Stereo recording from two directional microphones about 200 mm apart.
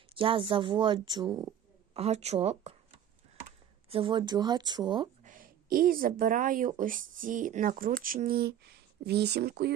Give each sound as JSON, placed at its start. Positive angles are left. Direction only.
{"t": 0.1, "sound": "speech", "side_deg": -25}
{"t": 1.9, "sound": "speech", "side_deg": -30}
{"t": 3.8, "sound": "speech", "side_deg": -25}
{"t": 5.2, "sound": "a woman's voice", "side_deg": -45}